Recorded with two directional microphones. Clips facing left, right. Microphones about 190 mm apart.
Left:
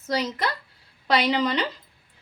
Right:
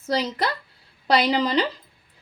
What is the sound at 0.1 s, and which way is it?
Speech, 35° right (ahead or behind).